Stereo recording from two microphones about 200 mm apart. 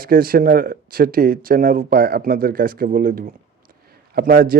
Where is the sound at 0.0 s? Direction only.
45° right (ahead or behind).